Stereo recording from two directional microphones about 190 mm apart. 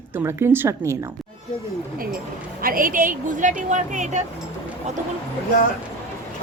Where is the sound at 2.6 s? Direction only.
45° right (ahead or behind).